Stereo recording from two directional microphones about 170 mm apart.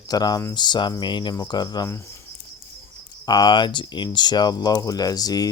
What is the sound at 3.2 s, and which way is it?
Speech, 25° left (ahead or behind).